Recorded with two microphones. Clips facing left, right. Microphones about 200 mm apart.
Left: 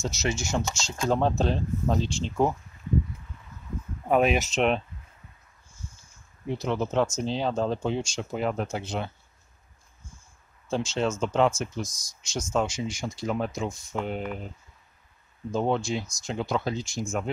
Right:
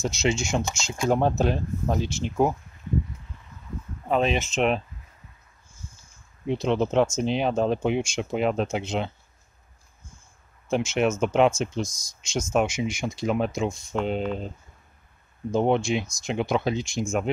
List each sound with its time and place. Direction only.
0.2 s speech: 25° right (ahead or behind)
0.9 s speech: 15° right (ahead or behind)
4.1 s speech: 10° left (ahead or behind)
4.6 s speech: centre (ahead or behind)
6.4 s speech: 20° right (ahead or behind)
10.7 s speech: 20° right (ahead or behind)
15.5 s speech: 20° right (ahead or behind)